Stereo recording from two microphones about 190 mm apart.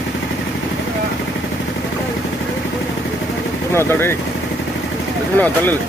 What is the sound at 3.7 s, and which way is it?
Speech, 10° left (ahead or behind).